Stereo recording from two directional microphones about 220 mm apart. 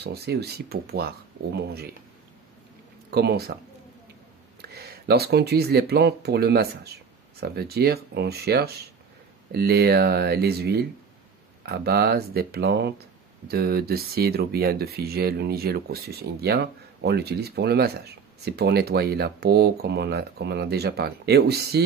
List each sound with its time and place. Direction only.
0.0 s speech: 50° right (ahead or behind)
3.1 s speech: 45° right (ahead or behind)
4.6 s speech: 45° right (ahead or behind)